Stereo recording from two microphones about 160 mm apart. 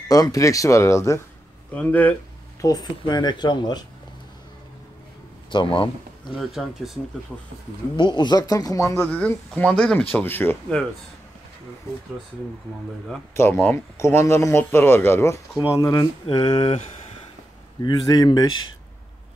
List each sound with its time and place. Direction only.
0.1 s speech: 20° left (ahead or behind)
2.6 s speech: 25° left (ahead or behind)
5.5 s a man's voice: 30° left (ahead or behind)
6.3 s speech: centre (ahead or behind)
7.9 s speech: 30° left (ahead or behind)
9.0 s speech: 10° left (ahead or behind)
13.3 s speech: 15° left (ahead or behind); by 16.8 s 30° left (ahead or behind)
17.8 s speech: 25° left (ahead or behind)